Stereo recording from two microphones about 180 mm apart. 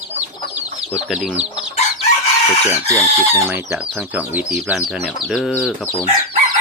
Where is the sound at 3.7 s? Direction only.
5° right (ahead or behind).